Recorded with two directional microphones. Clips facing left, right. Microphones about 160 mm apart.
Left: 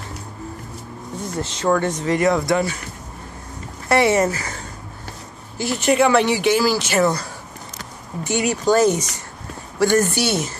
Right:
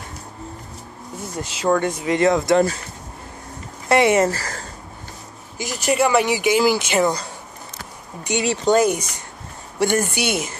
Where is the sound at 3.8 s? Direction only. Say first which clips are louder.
Right 1 dB; 20° right (ahead or behind).